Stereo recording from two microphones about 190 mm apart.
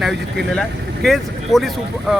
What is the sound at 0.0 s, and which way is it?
Speech, centre (ahead or behind).